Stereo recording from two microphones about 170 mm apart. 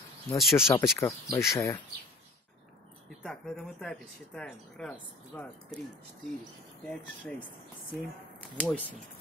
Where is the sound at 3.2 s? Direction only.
Centre (ahead or behind).